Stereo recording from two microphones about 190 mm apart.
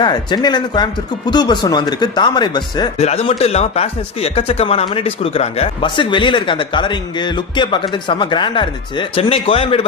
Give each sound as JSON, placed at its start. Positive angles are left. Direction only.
{"t": 0.0, "sound": "speech", "side_deg": 25}
{"t": 3.0, "sound": "speech", "side_deg": 35}